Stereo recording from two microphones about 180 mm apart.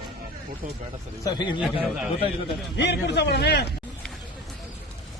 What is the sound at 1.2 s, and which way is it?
Speech, 25° left (ahead or behind).